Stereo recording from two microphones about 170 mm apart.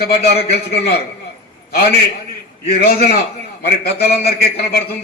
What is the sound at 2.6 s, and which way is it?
A man's voice, 65° left (ahead or behind).